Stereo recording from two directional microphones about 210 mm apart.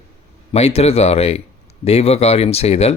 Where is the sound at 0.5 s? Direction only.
30° left (ahead or behind).